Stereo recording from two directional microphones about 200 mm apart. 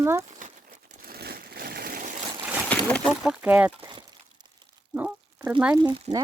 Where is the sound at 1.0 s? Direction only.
50° right (ahead or behind).